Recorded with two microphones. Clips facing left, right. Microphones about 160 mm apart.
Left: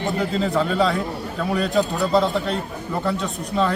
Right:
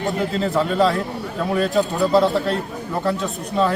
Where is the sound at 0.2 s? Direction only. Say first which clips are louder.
Even; centre (ahead or behind).